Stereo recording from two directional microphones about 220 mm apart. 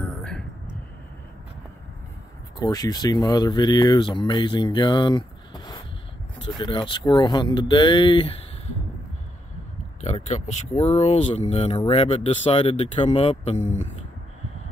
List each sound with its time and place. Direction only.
0.2 s a sound: 5° left (ahead or behind)
2.6 s speech: 15° left (ahead or behind)
10.0 s speech: 30° left (ahead or behind)